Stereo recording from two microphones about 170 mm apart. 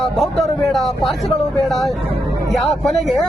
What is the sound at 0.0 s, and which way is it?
Speech, centre (ahead or behind).